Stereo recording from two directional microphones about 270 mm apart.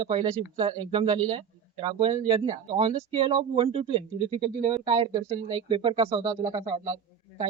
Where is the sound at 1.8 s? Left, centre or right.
Centre.